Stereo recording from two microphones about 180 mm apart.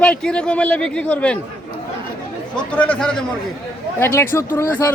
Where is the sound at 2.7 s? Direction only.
10° left (ahead or behind).